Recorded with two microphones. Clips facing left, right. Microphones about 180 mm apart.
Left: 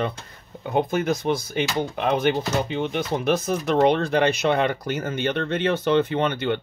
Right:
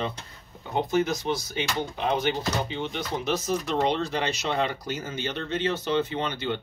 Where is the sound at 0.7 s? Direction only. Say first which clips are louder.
Left 3 dB; 55° left (ahead or behind).